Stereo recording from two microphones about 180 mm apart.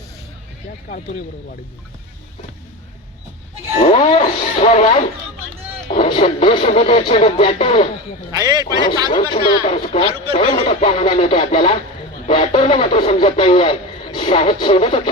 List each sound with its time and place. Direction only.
3.8 s music: 35° left (ahead or behind)
6.0 s speech: 30° left (ahead or behind)
8.4 s a man's voice: 20° right (ahead or behind)
8.8 s speech: 25° left (ahead or behind)